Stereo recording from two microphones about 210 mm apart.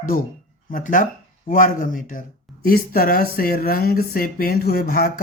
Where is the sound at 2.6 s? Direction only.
45° left (ahead or behind).